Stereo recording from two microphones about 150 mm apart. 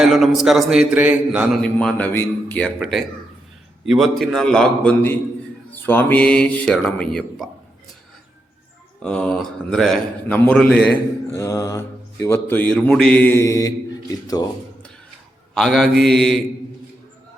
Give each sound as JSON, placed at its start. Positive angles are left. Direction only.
{"t": 0.0, "sound": "a man's voice", "side_deg": 0}
{"t": 1.6, "sound": "a man's voice", "side_deg": 5}
{"t": 2.7, "sound": "a man's voice", "side_deg": -5}
{"t": 9.0, "sound": "a man's voice", "side_deg": 5}
{"t": 11.3, "sound": "mantra", "side_deg": 20}
{"t": 12.2, "sound": "a man's voice", "side_deg": 15}
{"t": 15.5, "sound": "a man's voice", "side_deg": 0}